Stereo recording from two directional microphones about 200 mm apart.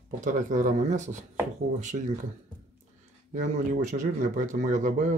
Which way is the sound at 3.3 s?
40° right (ahead or behind).